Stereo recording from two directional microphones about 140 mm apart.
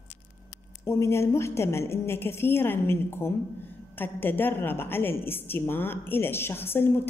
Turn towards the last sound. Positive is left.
turn(degrees=15)  # may be behind; listen again after turning